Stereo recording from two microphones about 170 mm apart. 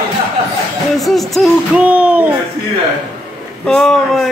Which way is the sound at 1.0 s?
Centre (ahead or behind).